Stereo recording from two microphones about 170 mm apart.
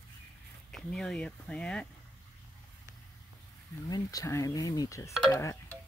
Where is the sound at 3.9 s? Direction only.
20° left (ahead or behind).